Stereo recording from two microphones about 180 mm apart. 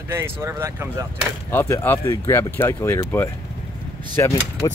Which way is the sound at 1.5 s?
10° left (ahead or behind).